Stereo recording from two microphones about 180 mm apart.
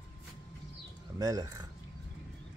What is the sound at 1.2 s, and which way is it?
Speech, 20° right (ahead or behind).